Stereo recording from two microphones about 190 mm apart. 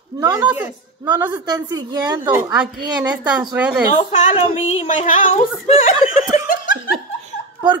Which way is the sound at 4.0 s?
35° left (ahead or behind).